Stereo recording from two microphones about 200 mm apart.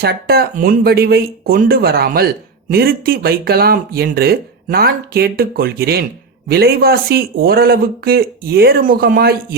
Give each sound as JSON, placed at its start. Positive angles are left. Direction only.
{"t": 0.0, "sound": "speech", "side_deg": -50}